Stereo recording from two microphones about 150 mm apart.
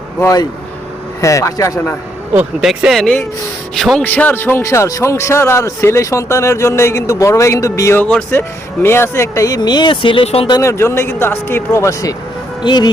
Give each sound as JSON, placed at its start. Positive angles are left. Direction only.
{"t": 0.2, "sound": "a man's voice", "side_deg": 20}
{"t": 2.3, "sound": "a man's voice", "side_deg": -5}
{"t": 10.6, "sound": "a man's voice", "side_deg": 20}